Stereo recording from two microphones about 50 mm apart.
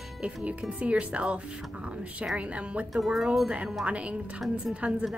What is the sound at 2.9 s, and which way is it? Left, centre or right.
Speech, centre.